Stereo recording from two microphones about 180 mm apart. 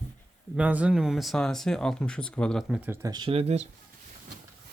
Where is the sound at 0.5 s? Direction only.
10° right (ahead or behind).